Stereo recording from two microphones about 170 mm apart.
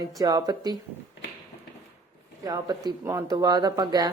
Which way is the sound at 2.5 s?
25° right (ahead or behind).